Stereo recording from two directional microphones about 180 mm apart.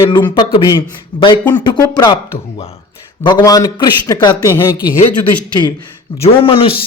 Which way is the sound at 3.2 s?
20° left (ahead or behind).